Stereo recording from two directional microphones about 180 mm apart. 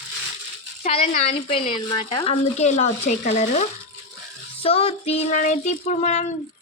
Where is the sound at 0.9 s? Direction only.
35° left (ahead or behind).